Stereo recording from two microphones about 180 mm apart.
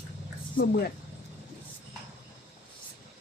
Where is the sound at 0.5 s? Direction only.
55° left (ahead or behind).